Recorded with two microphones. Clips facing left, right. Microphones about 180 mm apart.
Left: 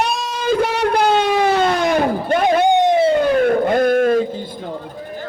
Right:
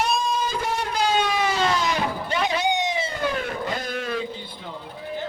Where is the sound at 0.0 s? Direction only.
80° left; by 4.7 s 45° left (ahead or behind).